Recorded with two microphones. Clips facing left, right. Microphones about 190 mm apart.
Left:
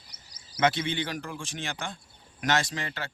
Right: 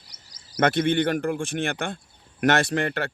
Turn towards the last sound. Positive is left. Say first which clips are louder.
# right 10 dB
turn(degrees=-60)  # may be behind; listen again after turning